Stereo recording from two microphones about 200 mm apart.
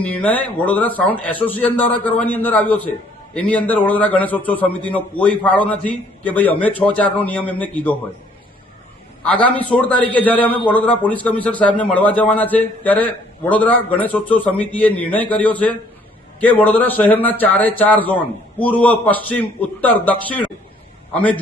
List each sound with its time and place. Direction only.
0.0 s a man's voice: 5° left (ahead or behind)
9.2 s a man's voice: 5° left (ahead or behind)